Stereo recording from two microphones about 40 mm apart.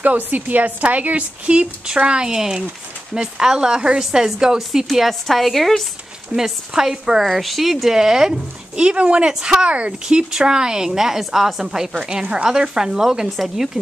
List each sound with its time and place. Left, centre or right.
0.0 s a woman's voice: right; by 4.9 s centre
5.2 s a woman's voice: centre
6.3 s speech: centre
7.2 s a woman's voice: centre
7.9 s speech: centre
8.7 s speech: right
10.0 s speech: centre
12.0 s speech: right